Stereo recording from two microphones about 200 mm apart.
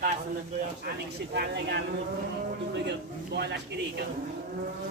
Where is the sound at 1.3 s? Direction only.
55° right (ahead or behind).